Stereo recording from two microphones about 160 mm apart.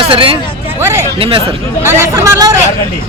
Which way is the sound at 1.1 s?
35° right (ahead or behind).